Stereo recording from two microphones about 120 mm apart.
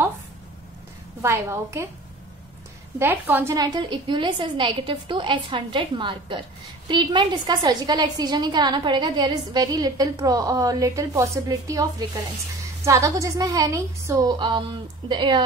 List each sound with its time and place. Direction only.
1.2 s a woman's voice: 25° right (ahead or behind)
3.0 s a woman's voice: 15° right (ahead or behind)
3.5 s a woman's voice: 35° right (ahead or behind)
12.8 s a woman's voice: 25° right (ahead or behind)
15.0 s a woman's voice: 40° right (ahead or behind)